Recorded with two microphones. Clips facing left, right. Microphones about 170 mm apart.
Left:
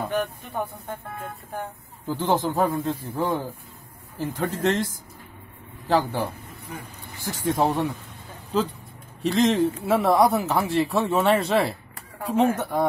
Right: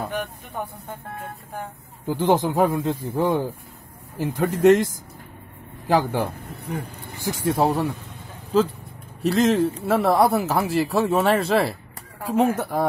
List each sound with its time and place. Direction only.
0.0 s a sound: 10° right (ahead or behind)
2.0 s speech: 15° right (ahead or behind)
6.6 s vehicle: 60° right (ahead or behind)
7.2 s speech: 10° right (ahead or behind)
9.2 s speech: 5° right (ahead or behind)